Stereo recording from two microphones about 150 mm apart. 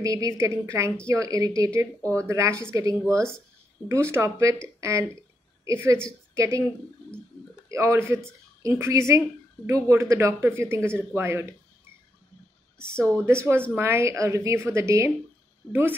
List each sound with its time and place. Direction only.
0.0 s a woman's voice: 20° right (ahead or behind)
7.7 s a woman's voice: 20° right (ahead or behind)
13.0 s a woman's voice: 15° right (ahead or behind)